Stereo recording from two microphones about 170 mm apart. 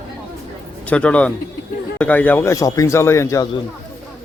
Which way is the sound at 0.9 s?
5° left (ahead or behind).